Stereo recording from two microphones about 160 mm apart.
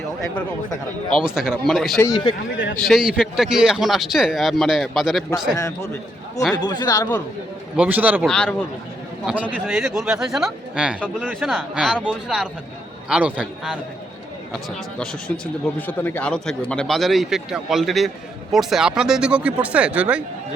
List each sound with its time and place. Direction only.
1.3 s a man's voice: 5° right (ahead or behind)
2.0 s speech: 25° left (ahead or behind)
2.7 s a man's voice: centre (ahead or behind)
5.5 s a man's voice: 20° left (ahead or behind)
7.8 s speech: 10° right (ahead or behind)
8.2 s a man's voice: 5° left (ahead or behind)
9.2 s a man's voice: 10° right (ahead or behind)
14.5 s a man's voice: 5° left (ahead or behind)